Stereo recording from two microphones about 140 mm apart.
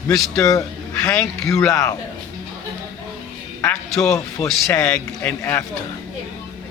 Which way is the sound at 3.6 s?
5° left (ahead or behind).